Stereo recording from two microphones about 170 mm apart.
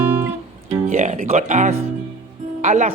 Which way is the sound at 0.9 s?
45° right (ahead or behind).